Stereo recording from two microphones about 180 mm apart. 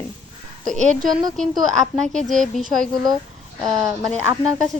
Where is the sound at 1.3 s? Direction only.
Centre (ahead or behind).